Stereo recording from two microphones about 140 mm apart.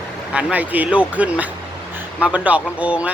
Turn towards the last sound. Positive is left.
turn(degrees=-10)  # may be behind; listen again after turning